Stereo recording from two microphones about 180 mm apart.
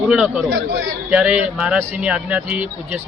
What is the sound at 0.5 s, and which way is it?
Speech, 90° right.